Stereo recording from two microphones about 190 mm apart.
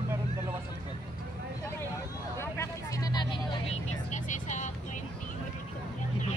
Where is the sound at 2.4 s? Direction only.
15° left (ahead or behind).